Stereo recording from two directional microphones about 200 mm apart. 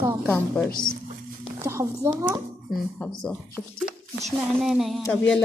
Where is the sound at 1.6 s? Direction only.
15° right (ahead or behind).